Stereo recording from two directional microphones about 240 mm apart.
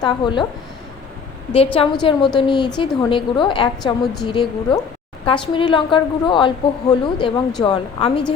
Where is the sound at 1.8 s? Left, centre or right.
Left.